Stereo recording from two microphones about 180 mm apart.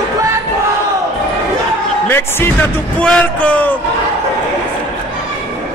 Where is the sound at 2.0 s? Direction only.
15° left (ahead or behind).